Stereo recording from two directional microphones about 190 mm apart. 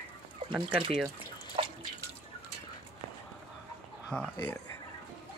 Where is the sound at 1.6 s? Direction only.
30° right (ahead or behind).